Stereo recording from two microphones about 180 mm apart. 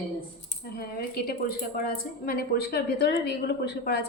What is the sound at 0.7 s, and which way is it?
A woman's voice, 60° left (ahead or behind).